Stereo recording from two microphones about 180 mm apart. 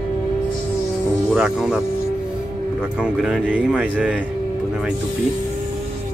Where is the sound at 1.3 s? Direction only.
5° right (ahead or behind).